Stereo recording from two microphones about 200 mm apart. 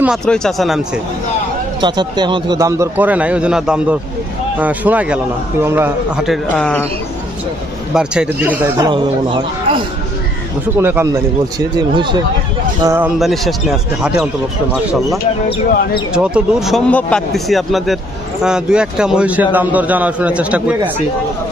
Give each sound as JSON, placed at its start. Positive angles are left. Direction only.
{"t": 0.0, "sound": "speech", "side_deg": 0}
{"t": 1.8, "sound": "a man's voice", "side_deg": -20}
{"t": 7.9, "sound": "a man's voice", "side_deg": -5}
{"t": 8.9, "sound": "speech", "side_deg": -25}
{"t": 10.8, "sound": "a man's voice", "side_deg": -10}
{"t": 13.1, "sound": "speech", "side_deg": 0}
{"t": 16.1, "sound": "a man's voice", "side_deg": -5}